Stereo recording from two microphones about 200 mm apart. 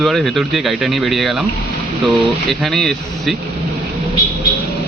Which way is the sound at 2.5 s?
Centre (ahead or behind).